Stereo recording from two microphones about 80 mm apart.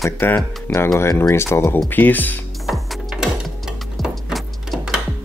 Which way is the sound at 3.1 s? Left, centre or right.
Centre.